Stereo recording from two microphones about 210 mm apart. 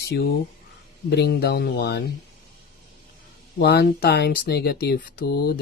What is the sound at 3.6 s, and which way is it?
Speech, 50° left (ahead or behind).